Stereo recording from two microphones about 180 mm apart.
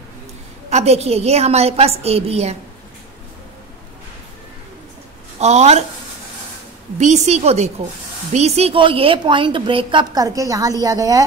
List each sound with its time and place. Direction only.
0.7 s a woman's voice: 35° right (ahead or behind)
5.4 s a woman's voice: 40° right (ahead or behind)
7.0 s a woman's voice: 40° right (ahead or behind); by 11.2 s 20° right (ahead or behind)